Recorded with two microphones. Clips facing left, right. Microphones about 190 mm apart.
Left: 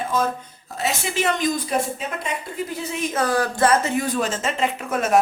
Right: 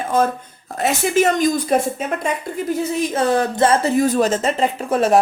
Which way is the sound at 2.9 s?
35° right (ahead or behind).